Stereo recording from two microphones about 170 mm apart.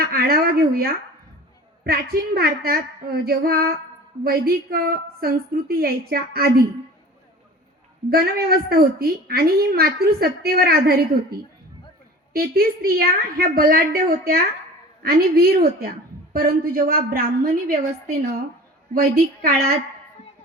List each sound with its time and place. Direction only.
0.0 s a woman's voice: 60° right (ahead or behind)
8.1 s a woman's voice: 65° right (ahead or behind)
18.9 s a woman's voice: 65° right (ahead or behind)